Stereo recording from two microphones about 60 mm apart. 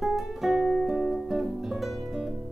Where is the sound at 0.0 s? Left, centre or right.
Centre.